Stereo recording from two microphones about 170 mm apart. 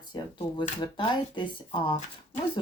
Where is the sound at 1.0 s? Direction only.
30° left (ahead or behind).